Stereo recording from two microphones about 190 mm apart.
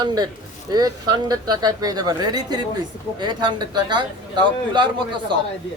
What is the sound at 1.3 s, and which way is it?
Speech, 20° right (ahead or behind).